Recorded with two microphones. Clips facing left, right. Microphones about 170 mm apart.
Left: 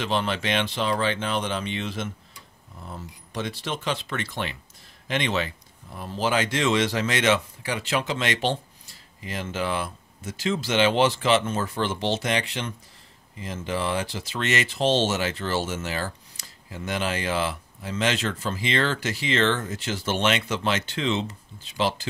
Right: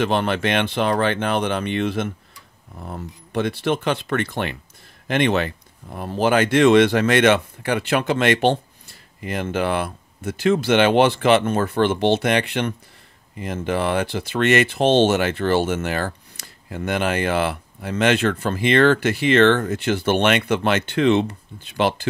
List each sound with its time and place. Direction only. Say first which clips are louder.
0.0 s speech: right 6 dB; 55° right (ahead or behind)